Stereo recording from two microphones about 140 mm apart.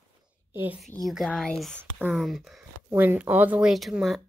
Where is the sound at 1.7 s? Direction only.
15° right (ahead or behind).